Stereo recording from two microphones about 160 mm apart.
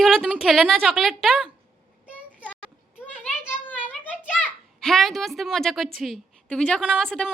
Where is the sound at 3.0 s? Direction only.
10° left (ahead or behind).